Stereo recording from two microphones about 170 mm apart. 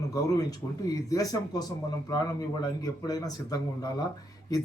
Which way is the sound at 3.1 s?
20° left (ahead or behind).